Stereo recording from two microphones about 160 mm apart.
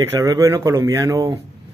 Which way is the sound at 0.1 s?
20° right (ahead or behind).